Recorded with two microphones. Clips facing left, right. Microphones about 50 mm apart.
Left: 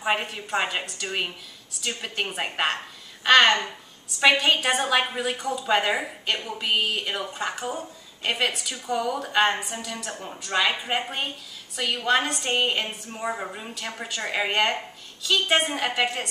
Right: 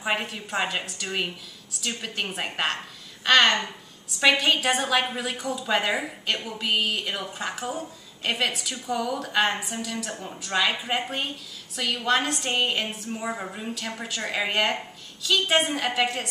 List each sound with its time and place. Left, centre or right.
0.0 s a woman's voice: centre